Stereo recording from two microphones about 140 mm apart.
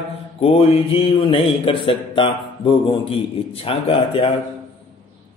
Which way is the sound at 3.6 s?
40° left (ahead or behind).